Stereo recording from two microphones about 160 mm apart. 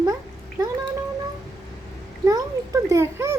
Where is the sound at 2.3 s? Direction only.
20° right (ahead or behind).